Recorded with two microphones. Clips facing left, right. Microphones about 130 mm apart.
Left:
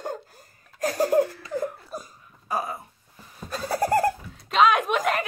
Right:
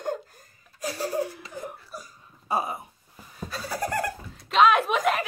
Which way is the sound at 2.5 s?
25° right (ahead or behind).